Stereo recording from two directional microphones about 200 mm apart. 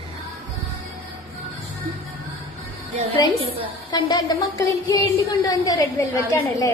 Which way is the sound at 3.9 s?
20° left (ahead or behind).